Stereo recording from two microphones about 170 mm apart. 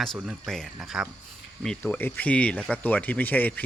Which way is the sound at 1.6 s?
10° left (ahead or behind).